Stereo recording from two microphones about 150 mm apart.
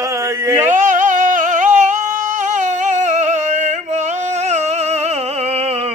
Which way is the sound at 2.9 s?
50° right (ahead or behind).